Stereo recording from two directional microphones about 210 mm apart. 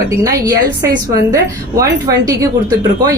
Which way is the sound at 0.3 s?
15° right (ahead or behind).